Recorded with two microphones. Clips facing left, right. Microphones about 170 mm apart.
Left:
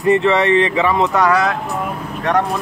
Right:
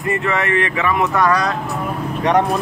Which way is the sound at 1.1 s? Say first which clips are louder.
Left 2 dB; 10° left (ahead or behind).